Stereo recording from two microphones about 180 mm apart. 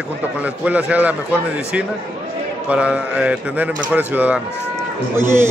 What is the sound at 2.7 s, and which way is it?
A man's voice, 5° right (ahead or behind).